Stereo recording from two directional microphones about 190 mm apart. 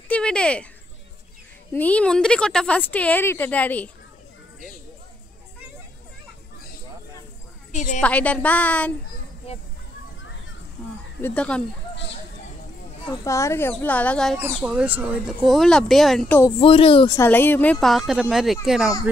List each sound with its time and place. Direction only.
0.1 s a sound: 5° left (ahead or behind)
1.7 s speech: 10° left (ahead or behind)
7.7 s a woman's voice: 40° left (ahead or behind)
8.0 s speech: 10° left (ahead or behind)
11.1 s speech: 10° left (ahead or behind)
11.9 s a sound: 65° left (ahead or behind)
13.0 s speech: 20° left (ahead or behind); by 16.3 s centre (ahead or behind)
16.5 s speech: 30° left (ahead or behind)
17.2 s speech: 10° left (ahead or behind)